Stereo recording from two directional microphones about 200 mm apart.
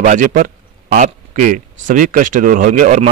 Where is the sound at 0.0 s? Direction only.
40° right (ahead or behind).